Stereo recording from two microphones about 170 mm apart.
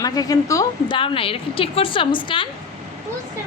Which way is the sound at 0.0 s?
20° left (ahead or behind).